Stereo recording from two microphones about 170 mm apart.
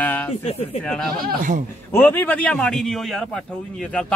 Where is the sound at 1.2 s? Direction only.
50° right (ahead or behind).